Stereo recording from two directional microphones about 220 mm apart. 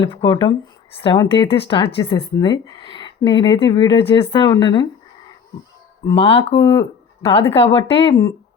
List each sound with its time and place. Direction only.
0.0 s speech: 25° left (ahead or behind)
6.1 s speech: 25° left (ahead or behind)
6.6 s speech: 15° left (ahead or behind)
7.5 s speech: 25° left (ahead or behind)